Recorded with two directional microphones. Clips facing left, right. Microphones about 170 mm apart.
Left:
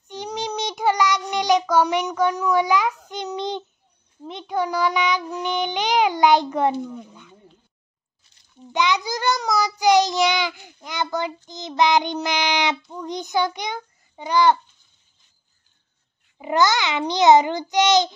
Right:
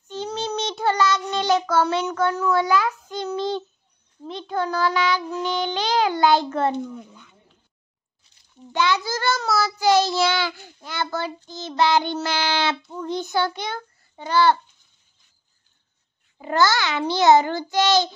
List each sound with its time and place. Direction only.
0.1 s child singing: 15° left (ahead or behind)
8.7 s child singing: 15° left (ahead or behind)
16.3 s a child's voice: 15° left (ahead or behind)